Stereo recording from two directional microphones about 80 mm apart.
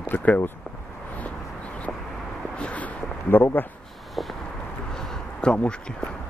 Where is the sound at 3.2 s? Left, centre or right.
Left.